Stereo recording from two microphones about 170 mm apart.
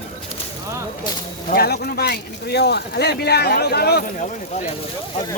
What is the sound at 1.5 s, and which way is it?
Speech, 65° left (ahead or behind).